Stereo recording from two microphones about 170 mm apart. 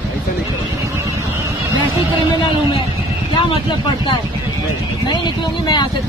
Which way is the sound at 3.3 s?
30° left (ahead or behind).